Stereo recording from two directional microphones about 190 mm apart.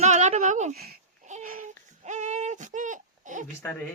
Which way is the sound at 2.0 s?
40° right (ahead or behind).